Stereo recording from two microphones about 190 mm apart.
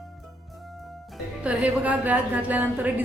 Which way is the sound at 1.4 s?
5° right (ahead or behind).